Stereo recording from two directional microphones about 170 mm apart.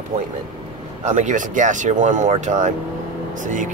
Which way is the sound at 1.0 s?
45° right (ahead or behind).